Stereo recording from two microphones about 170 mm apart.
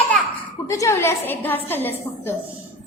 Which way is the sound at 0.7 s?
15° left (ahead or behind).